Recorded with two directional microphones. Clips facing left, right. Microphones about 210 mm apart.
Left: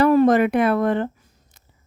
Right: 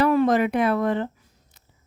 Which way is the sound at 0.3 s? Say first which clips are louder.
Left 3 dB; 60° left (ahead or behind).